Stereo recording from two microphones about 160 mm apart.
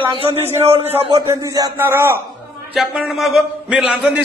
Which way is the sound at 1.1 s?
20° right (ahead or behind).